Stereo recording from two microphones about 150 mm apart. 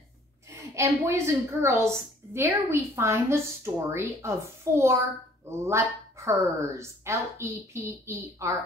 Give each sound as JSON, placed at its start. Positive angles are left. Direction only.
{"t": 0.5, "sound": "a woman's voice", "side_deg": -20}